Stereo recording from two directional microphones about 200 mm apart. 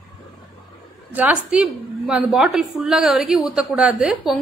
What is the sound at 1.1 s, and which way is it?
A woman's voice, 5° right (ahead or behind).